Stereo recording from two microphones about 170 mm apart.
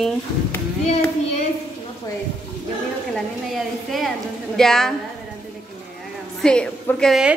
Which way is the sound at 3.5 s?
Centre (ahead or behind).